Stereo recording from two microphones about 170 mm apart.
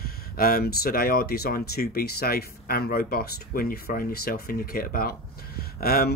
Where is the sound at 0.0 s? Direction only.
60° left (ahead or behind).